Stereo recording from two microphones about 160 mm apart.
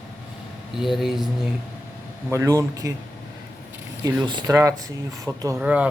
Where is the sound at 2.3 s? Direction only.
20° right (ahead or behind).